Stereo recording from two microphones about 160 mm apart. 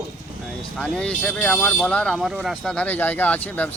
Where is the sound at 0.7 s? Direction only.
5° left (ahead or behind).